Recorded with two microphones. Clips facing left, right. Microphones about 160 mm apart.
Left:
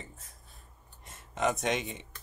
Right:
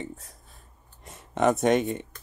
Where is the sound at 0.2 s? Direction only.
Centre (ahead or behind).